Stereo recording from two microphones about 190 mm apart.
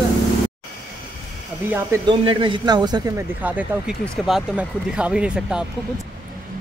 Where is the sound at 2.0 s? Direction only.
25° right (ahead or behind).